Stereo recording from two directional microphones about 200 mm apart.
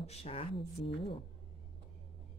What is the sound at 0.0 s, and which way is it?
Speech, 30° left (ahead or behind).